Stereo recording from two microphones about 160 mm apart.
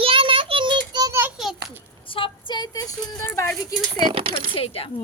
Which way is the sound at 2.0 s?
35° left (ahead or behind).